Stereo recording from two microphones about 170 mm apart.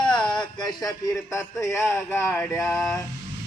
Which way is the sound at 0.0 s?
25° left (ahead or behind).